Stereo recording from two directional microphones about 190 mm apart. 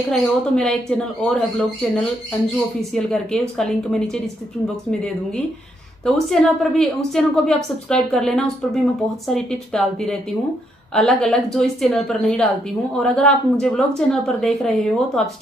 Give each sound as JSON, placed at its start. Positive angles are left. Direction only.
{"t": 0.1, "sound": "a woman's voice", "side_deg": 5}
{"t": 6.0, "sound": "a woman's voice", "side_deg": 0}